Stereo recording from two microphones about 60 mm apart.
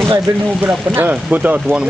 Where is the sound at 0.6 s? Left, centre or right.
Right.